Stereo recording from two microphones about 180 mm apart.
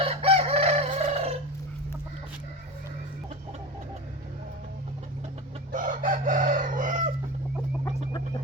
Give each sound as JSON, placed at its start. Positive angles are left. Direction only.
{"t": 0.0, "sound": "chicken", "side_deg": -30}
{"t": 5.7, "sound": "chicken", "side_deg": -45}